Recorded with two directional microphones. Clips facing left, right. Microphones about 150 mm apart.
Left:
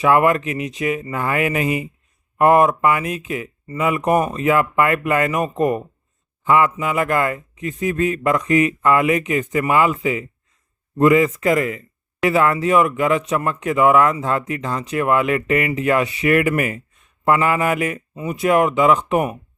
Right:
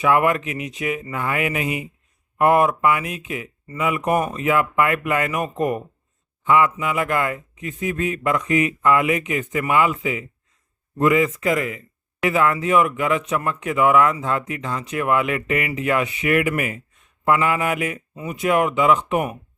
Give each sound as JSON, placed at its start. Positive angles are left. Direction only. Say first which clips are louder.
{"t": 0.0, "sound": "a man's voice", "louder": "left 3 dB", "side_deg": 35}
{"t": 18.1, "sound": "speech", "louder": "left 4 dB", "side_deg": 25}
{"t": 18.3, "sound": "speech", "louder": "left 3 dB", "side_deg": 40}